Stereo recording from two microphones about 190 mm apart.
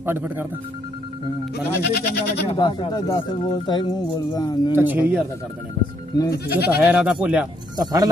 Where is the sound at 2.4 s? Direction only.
25° left (ahead or behind).